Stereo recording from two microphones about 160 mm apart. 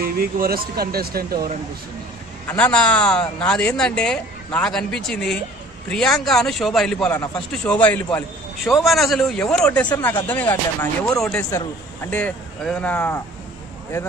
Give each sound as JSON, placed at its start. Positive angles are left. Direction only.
{"t": 0.0, "sound": "speech", "side_deg": -70}
{"t": 2.4, "sound": "speech", "side_deg": 5}